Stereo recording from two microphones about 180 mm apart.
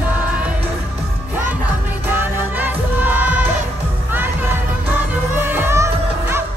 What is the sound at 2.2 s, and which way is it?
Music, 10° right (ahead or behind).